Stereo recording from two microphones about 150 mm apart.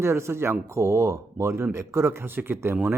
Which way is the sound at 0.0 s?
15° right (ahead or behind).